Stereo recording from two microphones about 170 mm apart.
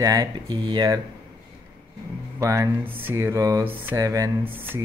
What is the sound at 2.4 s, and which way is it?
A man's voice, 20° right (ahead or behind).